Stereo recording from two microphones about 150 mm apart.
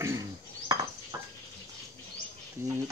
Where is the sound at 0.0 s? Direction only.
20° right (ahead or behind).